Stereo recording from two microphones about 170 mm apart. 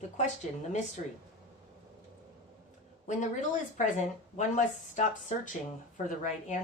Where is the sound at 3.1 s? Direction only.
45° left (ahead or behind).